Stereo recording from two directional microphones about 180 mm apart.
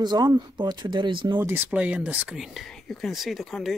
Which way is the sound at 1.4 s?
10° right (ahead or behind).